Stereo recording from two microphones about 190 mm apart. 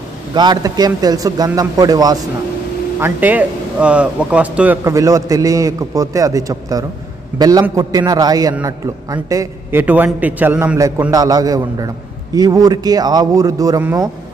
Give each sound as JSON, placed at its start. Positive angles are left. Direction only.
{"t": 0.3, "sound": "a man's voice", "side_deg": -20}
{"t": 3.0, "sound": "a man's voice", "side_deg": -10}